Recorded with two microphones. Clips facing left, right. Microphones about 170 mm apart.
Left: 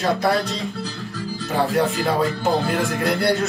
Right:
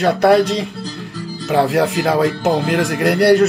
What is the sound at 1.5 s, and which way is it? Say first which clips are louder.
Speech: right 5 dB; 80° right.